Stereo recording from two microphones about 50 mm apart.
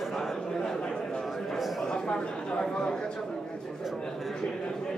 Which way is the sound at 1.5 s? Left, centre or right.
Centre.